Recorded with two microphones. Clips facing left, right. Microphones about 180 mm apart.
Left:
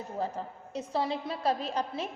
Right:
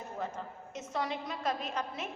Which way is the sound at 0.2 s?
35° left (ahead or behind).